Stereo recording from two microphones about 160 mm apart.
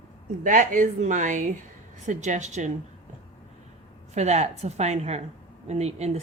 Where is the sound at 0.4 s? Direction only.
55° right (ahead or behind).